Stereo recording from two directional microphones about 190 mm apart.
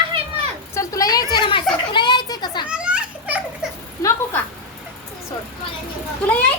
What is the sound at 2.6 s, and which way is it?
Children playing, 5° right (ahead or behind).